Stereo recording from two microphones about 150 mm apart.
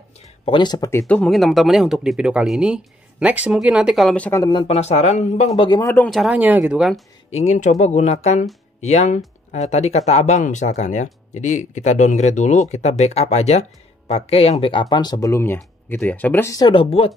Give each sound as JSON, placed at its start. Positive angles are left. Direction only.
{"t": 0.5, "sound": "speech", "side_deg": 30}
{"t": 1.0, "sound": "speech", "side_deg": 5}
{"t": 4.5, "sound": "speech", "side_deg": 35}
{"t": 4.7, "sound": "speech", "side_deg": 45}
{"t": 5.6, "sound": "speech", "side_deg": 25}
{"t": 5.9, "sound": "speech", "side_deg": 0}
{"t": 6.3, "sound": "speech", "side_deg": -10}
{"t": 7.2, "sound": "speech", "side_deg": 50}
{"t": 16.8, "sound": "speech", "side_deg": 40}